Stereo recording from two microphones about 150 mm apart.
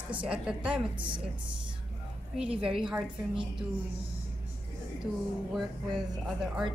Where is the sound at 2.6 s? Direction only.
5° right (ahead or behind).